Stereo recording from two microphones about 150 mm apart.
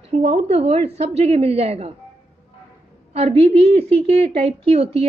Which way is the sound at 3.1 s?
45° right (ahead or behind).